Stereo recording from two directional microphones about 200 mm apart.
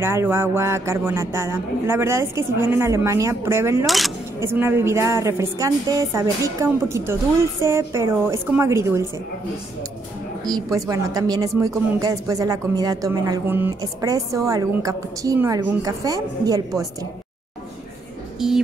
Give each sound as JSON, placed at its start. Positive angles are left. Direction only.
{"t": 0.0, "sound": "speech", "side_deg": -10}
{"t": 3.8, "sound": "speech", "side_deg": 0}
{"t": 4.4, "sound": "speech", "side_deg": -10}
{"t": 10.4, "sound": "speech", "side_deg": -20}
{"t": 18.4, "sound": "speech", "side_deg": 0}